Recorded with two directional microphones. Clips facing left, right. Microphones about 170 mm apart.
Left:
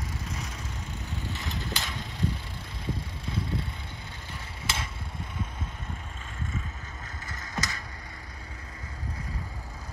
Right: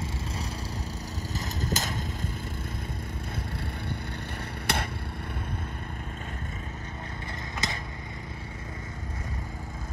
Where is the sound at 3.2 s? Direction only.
55° right (ahead or behind).